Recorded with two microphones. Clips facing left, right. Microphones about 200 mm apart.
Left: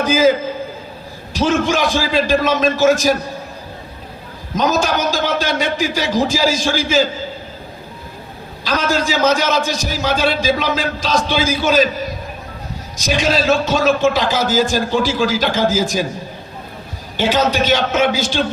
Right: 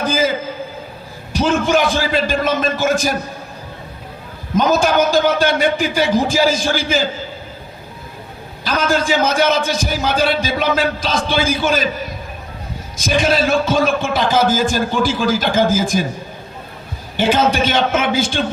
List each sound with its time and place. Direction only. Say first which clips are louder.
0.0 s a man's voice: left 2 dB; 50° right (ahead or behind)
1.4 s a man's voice: right 1 dB; 55° right (ahead or behind)
4.5 s a man's voice: right 3 dB; 50° right (ahead or behind)
8.6 s a man's voice: right 1 dB; 55° right (ahead or behind)
13.0 s a man's voice: right 1 dB; 50° right (ahead or behind)
17.2 s a man's voice: right 1 dB; 50° right (ahead or behind)